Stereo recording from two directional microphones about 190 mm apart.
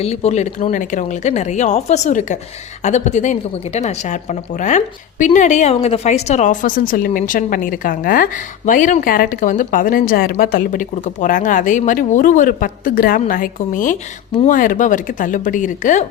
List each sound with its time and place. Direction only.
0.0 s a woman's voice: 35° left (ahead or behind)